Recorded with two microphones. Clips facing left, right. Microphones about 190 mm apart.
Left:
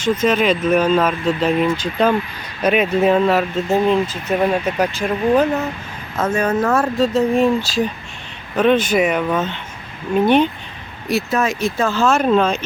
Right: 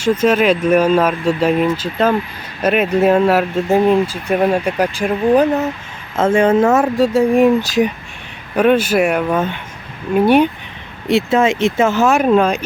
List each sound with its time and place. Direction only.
0.0 s speech: 10° right (ahead or behind)
6.1 s speech: 25° right (ahead or behind)
6.8 s speech: 10° right (ahead or behind)
11.1 s speech: 25° right (ahead or behind)